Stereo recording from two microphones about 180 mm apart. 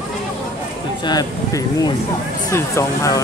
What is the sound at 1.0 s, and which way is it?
Speech, 20° left (ahead or behind).